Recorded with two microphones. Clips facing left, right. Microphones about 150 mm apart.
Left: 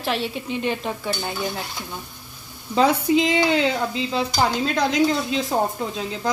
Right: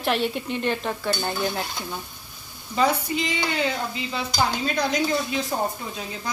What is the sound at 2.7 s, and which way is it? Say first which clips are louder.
Speech: left 5 dB; 90° left.